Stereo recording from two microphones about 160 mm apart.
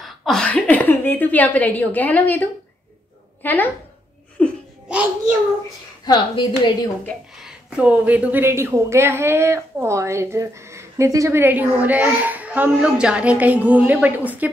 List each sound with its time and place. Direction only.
0.0 s a woman's voice: centre (ahead or behind)
3.4 s a woman's voice: 10° left (ahead or behind)
4.4 s laughter: 10° left (ahead or behind)
4.8 s a child's voice: 5° right (ahead or behind)
6.0 s a woman's voice: 30° left (ahead or behind)
7.4 s a woman's voice: 5° right (ahead or behind)